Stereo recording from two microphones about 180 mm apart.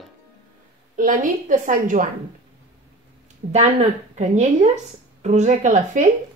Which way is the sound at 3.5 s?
40° right (ahead or behind).